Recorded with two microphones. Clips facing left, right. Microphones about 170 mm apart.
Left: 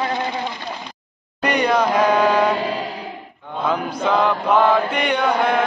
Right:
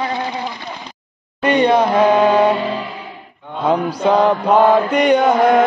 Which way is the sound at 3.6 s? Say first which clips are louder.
Right 5 dB; 35° right (ahead or behind).